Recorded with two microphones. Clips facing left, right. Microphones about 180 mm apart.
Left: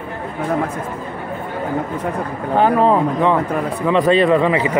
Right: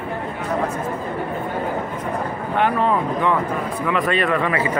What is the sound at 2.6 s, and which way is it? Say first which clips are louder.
Speech: left 5 dB; 35° left (ahead or behind).